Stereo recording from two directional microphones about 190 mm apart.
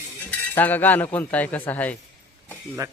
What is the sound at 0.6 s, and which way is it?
Speech, 10° left (ahead or behind).